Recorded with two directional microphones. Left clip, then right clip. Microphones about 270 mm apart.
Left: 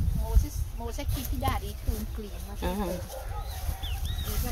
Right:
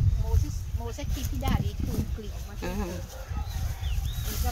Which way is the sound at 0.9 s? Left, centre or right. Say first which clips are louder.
Left 1 dB; centre.